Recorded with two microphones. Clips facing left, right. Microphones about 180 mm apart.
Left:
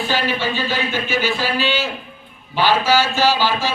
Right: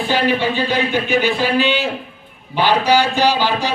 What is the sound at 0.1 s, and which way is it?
A man's voice, 20° right (ahead or behind).